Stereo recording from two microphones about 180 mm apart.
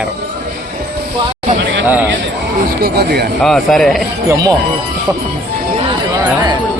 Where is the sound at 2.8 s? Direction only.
60° right (ahead or behind).